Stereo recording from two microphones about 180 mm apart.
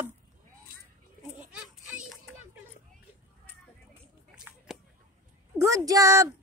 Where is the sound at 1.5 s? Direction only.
5° right (ahead or behind).